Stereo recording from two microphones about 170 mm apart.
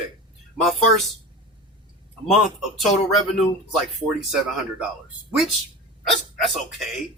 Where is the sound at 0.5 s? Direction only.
Centre (ahead or behind).